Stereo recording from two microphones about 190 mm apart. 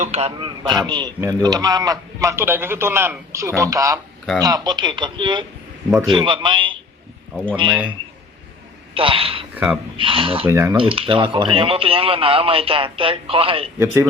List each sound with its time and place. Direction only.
0.0 s a man's voice: 35° right (ahead or behind)
7.7 s speech: 5° right (ahead or behind)
9.0 s a man's voice: 30° right (ahead or behind)
10.4 s speech: 15° right (ahead or behind)
10.8 s a man's voice: 30° right (ahead or behind)
13.7 s speech: 15° right (ahead or behind)